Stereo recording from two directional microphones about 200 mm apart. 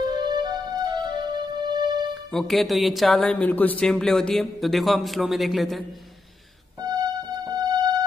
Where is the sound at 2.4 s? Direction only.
Centre (ahead or behind).